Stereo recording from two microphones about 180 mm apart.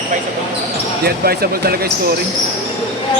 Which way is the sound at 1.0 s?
60° right (ahead or behind).